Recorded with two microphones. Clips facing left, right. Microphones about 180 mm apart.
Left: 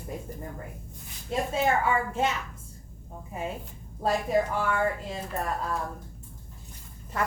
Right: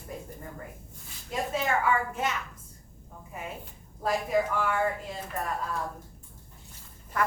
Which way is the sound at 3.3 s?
30° left (ahead or behind).